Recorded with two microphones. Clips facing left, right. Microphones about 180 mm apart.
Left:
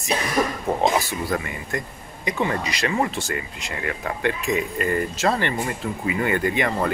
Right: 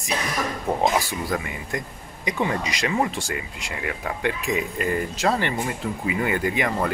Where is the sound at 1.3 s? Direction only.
10° right (ahead or behind).